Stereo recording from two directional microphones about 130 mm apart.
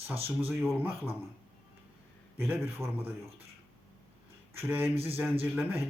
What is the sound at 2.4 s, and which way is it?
Speech, 15° right (ahead or behind).